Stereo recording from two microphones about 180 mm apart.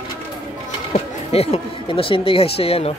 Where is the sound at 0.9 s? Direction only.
35° left (ahead or behind).